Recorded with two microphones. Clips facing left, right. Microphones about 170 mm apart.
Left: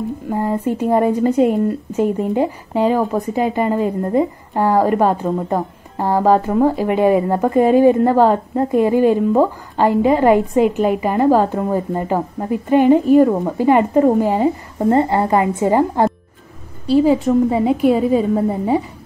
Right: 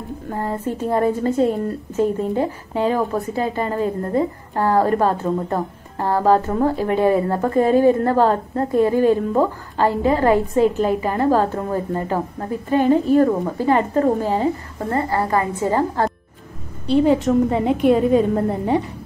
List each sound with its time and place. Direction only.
0.3 s a woman's voice: 10° left (ahead or behind)
14.9 s a woman's voice: 25° left (ahead or behind)
16.8 s a woman's voice: 5° left (ahead or behind)